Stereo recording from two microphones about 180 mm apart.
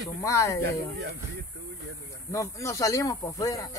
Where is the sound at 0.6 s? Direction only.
65° right (ahead or behind).